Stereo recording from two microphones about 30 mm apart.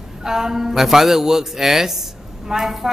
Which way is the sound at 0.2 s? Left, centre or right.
Centre.